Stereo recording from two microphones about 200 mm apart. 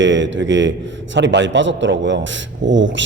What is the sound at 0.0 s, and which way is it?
A man's voice, 65° right (ahead or behind).